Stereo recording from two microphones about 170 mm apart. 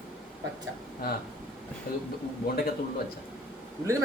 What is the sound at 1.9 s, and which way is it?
Speech, 60° left (ahead or behind).